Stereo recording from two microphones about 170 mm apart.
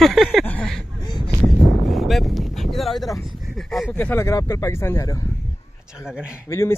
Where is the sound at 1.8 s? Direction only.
Centre (ahead or behind); by 5.3 s 20° left (ahead or behind).